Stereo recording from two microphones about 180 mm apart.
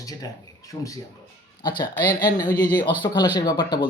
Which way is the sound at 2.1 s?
25° left (ahead or behind).